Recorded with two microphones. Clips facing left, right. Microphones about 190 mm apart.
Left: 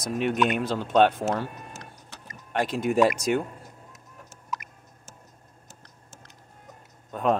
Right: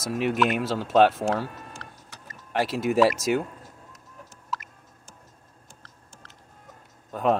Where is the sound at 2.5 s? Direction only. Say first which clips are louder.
Right 1 dB; 5° right (ahead or behind).